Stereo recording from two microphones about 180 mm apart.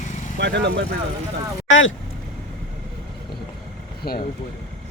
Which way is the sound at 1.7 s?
90° left.